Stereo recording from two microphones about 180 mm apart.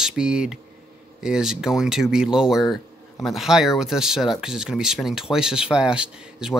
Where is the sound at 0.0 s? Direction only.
5° right (ahead or behind).